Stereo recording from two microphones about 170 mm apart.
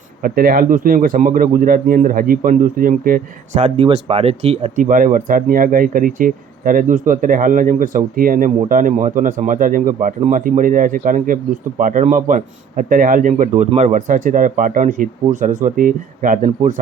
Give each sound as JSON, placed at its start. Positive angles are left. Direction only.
{"t": 0.2, "sound": "a man's voice", "side_deg": -60}
{"t": 4.8, "sound": "speech", "side_deg": -50}